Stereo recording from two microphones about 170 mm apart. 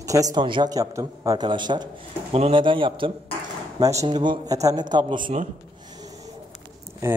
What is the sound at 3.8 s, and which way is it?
A man's voice, 20° right (ahead or behind).